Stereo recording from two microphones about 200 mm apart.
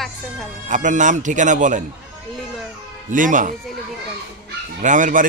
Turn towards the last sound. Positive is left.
turn(degrees=-40)  # may be behind; listen again after turning